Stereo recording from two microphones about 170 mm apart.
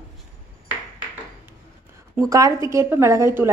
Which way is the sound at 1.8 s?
15° right (ahead or behind).